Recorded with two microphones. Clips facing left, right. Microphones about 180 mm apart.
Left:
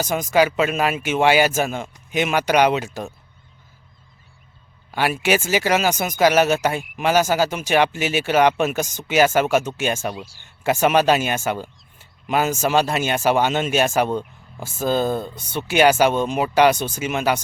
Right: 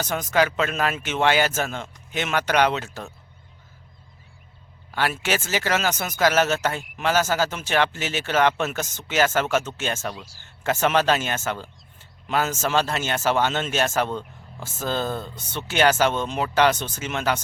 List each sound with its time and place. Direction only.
0.0 s speech: 10° left (ahead or behind)
4.9 s speech: 15° left (ahead or behind)